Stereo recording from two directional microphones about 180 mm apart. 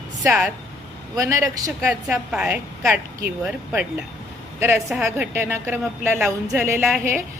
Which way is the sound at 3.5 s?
5° right (ahead or behind).